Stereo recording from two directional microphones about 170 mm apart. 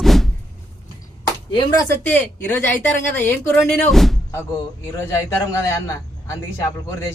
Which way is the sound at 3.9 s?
Centre (ahead or behind).